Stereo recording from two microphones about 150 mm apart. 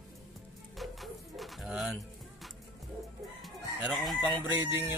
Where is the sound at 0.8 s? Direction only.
Centre (ahead or behind).